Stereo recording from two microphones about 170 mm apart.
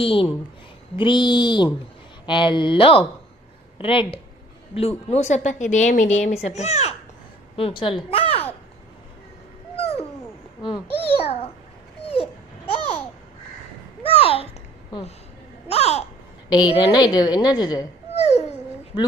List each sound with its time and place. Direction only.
0.0 s a woman's voice: 30° left (ahead or behind)
11.2 s a woman's voice: 35° left (ahead or behind)
12.0 s babbling: 35° left (ahead or behind)
14.0 s a sound: 35° left (ahead or behind)
15.7 s a sound: 40° left (ahead or behind)
16.5 s a woman's voice: 25° left (ahead or behind)
18.1 s dog: 40° left (ahead or behind)